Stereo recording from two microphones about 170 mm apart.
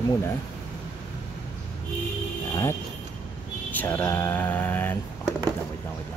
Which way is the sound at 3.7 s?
10° left (ahead or behind).